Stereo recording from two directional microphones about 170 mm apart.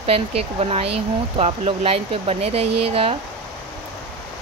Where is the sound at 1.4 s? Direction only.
35° right (ahead or behind).